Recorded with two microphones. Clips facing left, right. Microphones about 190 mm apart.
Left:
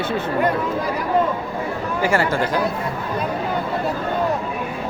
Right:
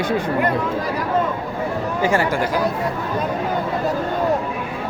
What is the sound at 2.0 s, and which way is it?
Speech, 15° right (ahead or behind).